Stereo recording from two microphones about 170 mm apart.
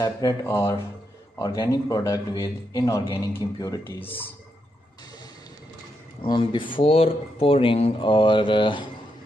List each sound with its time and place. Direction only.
0.0 s a man's voice: 20° left (ahead or behind)
6.2 s a man's voice: 30° left (ahead or behind)